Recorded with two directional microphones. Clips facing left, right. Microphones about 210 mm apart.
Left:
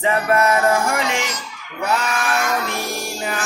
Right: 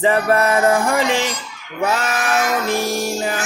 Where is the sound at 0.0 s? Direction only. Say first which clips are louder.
Right 2 dB; 30° right (ahead or behind).